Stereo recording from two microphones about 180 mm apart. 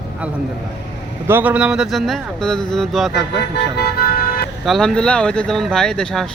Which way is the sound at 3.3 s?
70° left (ahead or behind).